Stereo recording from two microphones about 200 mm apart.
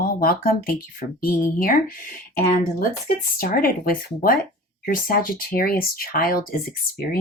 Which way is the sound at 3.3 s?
45° left (ahead or behind).